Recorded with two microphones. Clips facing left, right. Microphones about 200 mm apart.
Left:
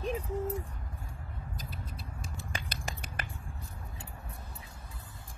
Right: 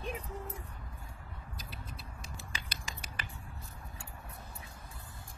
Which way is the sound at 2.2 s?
50° left (ahead or behind).